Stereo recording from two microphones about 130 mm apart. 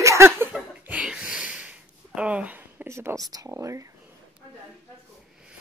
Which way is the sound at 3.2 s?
25° right (ahead or behind).